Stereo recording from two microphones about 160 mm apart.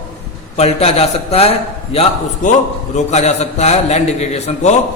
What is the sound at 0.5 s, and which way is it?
A man's voice, 40° left (ahead or behind).